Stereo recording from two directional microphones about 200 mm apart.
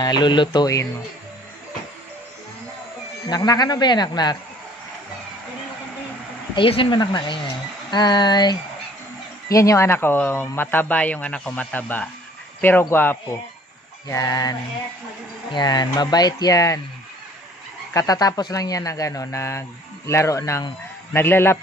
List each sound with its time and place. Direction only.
0.0 s speech: 20° left (ahead or behind)
3.3 s speech: 20° left (ahead or behind)
6.5 s speech: 25° left (ahead or behind)
17.9 s speech: 20° left (ahead or behind)